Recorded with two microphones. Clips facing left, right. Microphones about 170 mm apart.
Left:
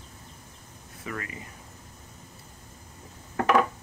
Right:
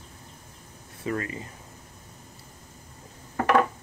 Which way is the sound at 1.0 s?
30° right (ahead or behind).